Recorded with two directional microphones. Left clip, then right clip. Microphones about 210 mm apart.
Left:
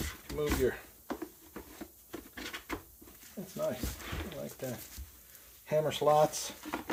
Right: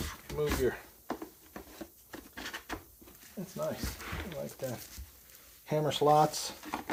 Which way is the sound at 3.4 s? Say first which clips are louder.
Right 1 dB; 20° right (ahead or behind).